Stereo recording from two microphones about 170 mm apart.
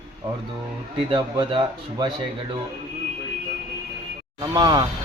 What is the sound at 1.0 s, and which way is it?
Speech, 30° right (ahead or behind).